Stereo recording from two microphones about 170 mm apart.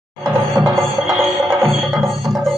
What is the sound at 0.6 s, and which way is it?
Music, 15° right (ahead or behind).